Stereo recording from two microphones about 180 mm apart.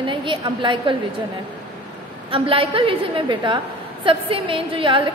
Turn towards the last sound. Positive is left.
turn(degrees=-30)  # may be behind; listen again after turning